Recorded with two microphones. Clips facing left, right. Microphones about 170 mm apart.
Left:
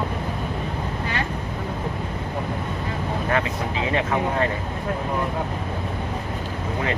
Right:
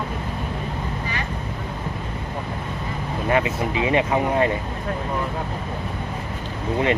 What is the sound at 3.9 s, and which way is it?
Speech, 15° right (ahead or behind).